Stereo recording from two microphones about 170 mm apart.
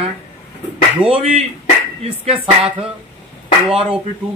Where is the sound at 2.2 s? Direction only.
35° right (ahead or behind).